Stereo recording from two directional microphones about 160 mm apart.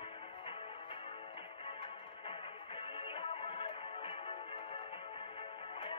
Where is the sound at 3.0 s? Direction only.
40° left (ahead or behind).